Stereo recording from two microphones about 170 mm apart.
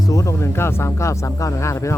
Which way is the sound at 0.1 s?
15° left (ahead or behind).